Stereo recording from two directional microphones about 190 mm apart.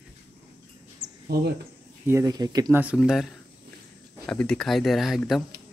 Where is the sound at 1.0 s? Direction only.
20° right (ahead or behind).